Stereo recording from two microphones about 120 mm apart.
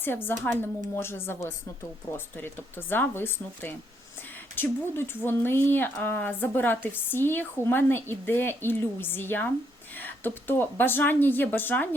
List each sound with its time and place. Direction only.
0.0 s a woman's voice: 15° left (ahead or behind)